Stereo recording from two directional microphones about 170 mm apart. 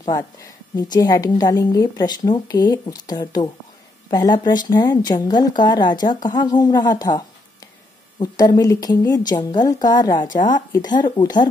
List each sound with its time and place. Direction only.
0.0 s a woman's voice: 20° left (ahead or behind)
10.2 s a woman's voice: 50° left (ahead or behind)
10.5 s a woman's voice: 20° left (ahead or behind)